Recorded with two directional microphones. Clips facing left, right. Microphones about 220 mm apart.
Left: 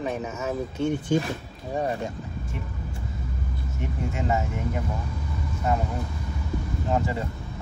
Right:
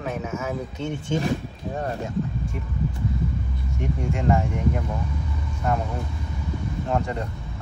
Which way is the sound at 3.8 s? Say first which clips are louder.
Right 3 dB; 5° left (ahead or behind).